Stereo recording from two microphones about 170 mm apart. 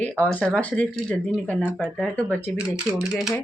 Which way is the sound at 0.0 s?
5° left (ahead or behind).